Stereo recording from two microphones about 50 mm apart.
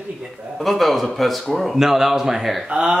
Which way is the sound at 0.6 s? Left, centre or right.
Centre.